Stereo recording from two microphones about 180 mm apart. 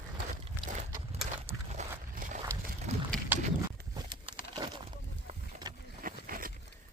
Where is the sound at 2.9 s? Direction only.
35° right (ahead or behind).